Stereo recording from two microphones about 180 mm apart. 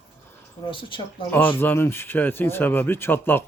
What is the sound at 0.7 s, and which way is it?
Speech, 30° left (ahead or behind).